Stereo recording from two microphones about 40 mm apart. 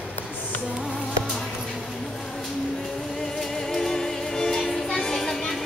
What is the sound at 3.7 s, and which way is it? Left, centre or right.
Music, centre.